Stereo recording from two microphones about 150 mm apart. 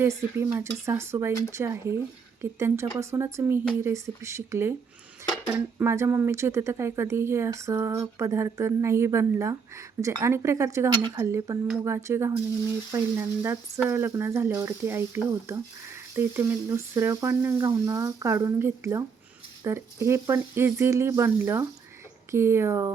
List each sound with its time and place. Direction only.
0.0 s speech: 20° right (ahead or behind)